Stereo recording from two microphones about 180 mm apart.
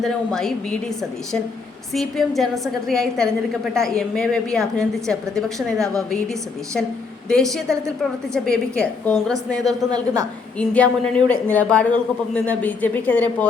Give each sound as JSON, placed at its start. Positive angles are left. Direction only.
{"t": 0.0, "sound": "a woman's voice", "side_deg": 0}
{"t": 1.9, "sound": "a woman's voice", "side_deg": 0}
{"t": 8.3, "sound": "a woman's voice", "side_deg": 5}
{"t": 9.6, "sound": "a woman's voice", "side_deg": -20}
{"t": 10.6, "sound": "a woman's voice", "side_deg": 5}